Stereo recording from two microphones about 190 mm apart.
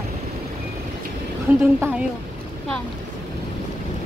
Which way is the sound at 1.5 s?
10° right (ahead or behind).